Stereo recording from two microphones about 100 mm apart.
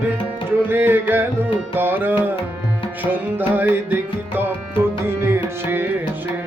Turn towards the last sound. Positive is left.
turn(degrees=-25)  # may be behind; listen again after turning